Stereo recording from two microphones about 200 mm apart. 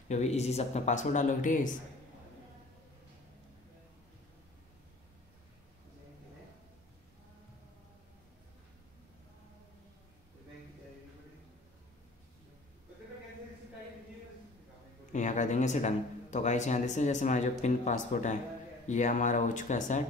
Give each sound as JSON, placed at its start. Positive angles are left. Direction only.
{"t": 0.1, "sound": "speech", "side_deg": 35}
{"t": 15.1, "sound": "speech", "side_deg": 40}